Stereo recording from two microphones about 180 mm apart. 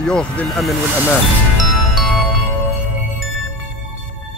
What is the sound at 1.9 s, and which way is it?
Music, centre (ahead or behind).